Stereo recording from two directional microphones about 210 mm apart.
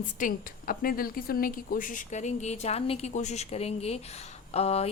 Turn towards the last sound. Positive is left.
turn(degrees=30)  # may be behind; listen again after turning